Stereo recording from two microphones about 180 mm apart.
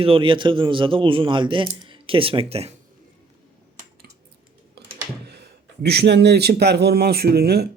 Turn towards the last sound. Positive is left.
turn(degrees=-60)  # may be behind; listen again after turning